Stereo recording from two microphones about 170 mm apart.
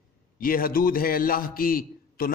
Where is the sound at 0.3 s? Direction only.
55° left (ahead or behind).